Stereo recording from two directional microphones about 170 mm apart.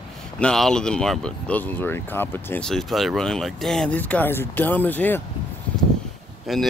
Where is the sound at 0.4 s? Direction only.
5° left (ahead or behind).